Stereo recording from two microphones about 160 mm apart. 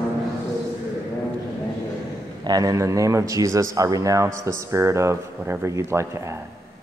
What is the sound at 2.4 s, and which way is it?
Speech, 25° right (ahead or behind).